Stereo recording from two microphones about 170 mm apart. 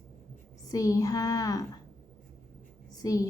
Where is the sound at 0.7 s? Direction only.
20° left (ahead or behind).